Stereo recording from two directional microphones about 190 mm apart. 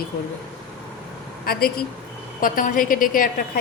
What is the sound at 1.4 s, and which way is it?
A woman's voice, 50° left (ahead or behind).